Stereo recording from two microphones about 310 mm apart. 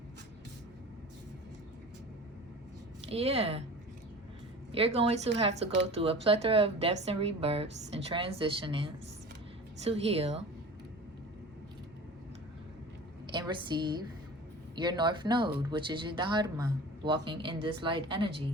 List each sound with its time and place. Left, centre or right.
3.1 s a woman's voice: centre
4.7 s a woman's voice: centre
13.3 s a woman's voice: centre